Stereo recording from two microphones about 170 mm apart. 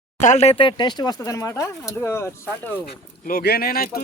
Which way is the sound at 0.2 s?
45° left (ahead or behind).